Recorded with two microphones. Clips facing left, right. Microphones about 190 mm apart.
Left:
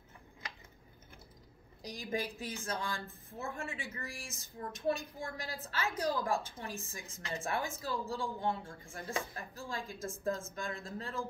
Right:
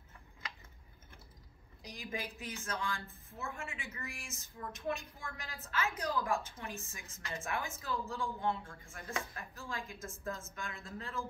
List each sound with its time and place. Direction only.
1.8 s a woman's voice: 35° left (ahead or behind)